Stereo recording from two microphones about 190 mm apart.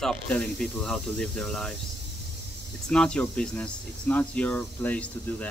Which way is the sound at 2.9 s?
5° left (ahead or behind).